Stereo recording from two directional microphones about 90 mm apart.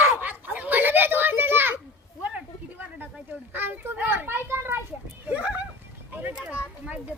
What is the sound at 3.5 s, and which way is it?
A child's voice, 20° right (ahead or behind).